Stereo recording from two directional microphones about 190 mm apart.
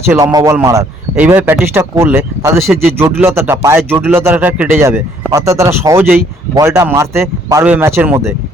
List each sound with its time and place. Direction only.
0.1 s speech: 20° right (ahead or behind)